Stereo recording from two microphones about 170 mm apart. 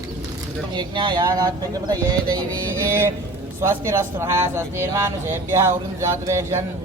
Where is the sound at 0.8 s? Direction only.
25° right (ahead or behind).